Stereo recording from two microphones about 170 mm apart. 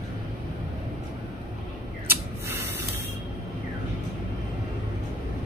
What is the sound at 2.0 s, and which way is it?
Spray, 15° right (ahead or behind).